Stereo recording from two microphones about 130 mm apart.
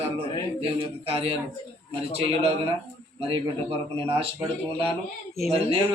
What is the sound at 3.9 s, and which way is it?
Speech, 45° right (ahead or behind).